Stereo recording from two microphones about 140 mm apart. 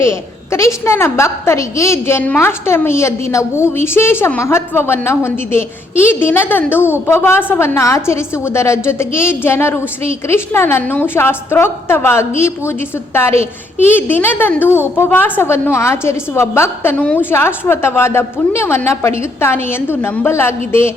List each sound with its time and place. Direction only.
0.0 s a woman's voice: 20° left (ahead or behind)